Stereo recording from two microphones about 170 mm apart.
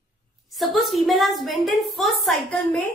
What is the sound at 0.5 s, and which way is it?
A woman's voice, centre (ahead or behind).